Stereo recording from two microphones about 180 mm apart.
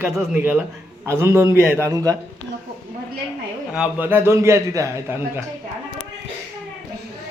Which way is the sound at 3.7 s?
5° right (ahead or behind).